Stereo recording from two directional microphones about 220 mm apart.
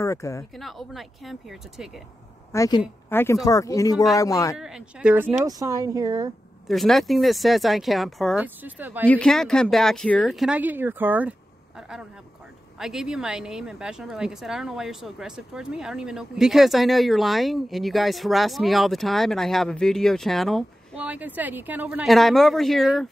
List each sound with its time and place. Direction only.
0.0 s speech: 15° left (ahead or behind)
0.6 s a woman's voice: centre (ahead or behind)
2.5 s speech: 15° left (ahead or behind)
4.6 s a woman's voice: 5° right (ahead or behind)
5.4 s speech: 15° right (ahead or behind)
6.7 s a woman's voice: centre (ahead or behind)
9.0 s a woman's voice: 5° left (ahead or behind)